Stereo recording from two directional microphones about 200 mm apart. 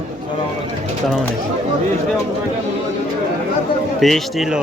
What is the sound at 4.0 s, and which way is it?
Speech, centre (ahead or behind).